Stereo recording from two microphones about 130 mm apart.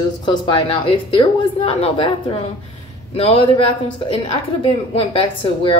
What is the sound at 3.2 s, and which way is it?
Speech, 45° left (ahead or behind).